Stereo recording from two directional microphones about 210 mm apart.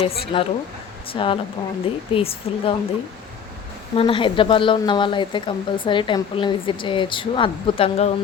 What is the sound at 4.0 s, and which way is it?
A woman's voice, 25° left (ahead or behind).